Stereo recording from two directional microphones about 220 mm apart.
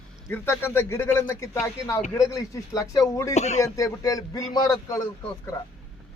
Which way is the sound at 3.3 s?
30° left (ahead or behind).